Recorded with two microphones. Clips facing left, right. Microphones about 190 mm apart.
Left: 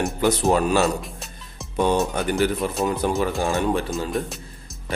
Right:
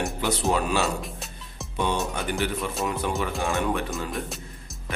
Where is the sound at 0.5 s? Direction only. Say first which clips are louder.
Left 5 dB; 40° left (ahead or behind).